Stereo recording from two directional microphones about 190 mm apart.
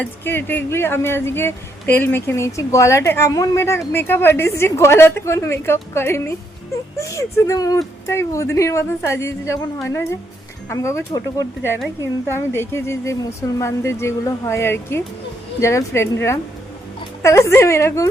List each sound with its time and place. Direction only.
0.0 s speech: 10° left (ahead or behind)
17.2 s speech: 15° left (ahead or behind)